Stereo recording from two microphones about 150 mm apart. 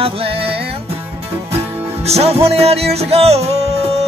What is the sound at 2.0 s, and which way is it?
Music, 45° right (ahead or behind).